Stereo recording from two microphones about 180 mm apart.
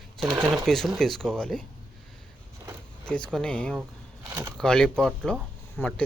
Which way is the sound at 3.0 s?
5° left (ahead or behind).